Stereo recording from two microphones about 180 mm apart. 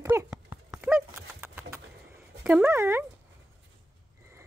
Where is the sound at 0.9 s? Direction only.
10° right (ahead or behind).